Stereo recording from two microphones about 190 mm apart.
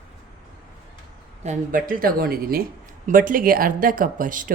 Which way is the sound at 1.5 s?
45° right (ahead or behind).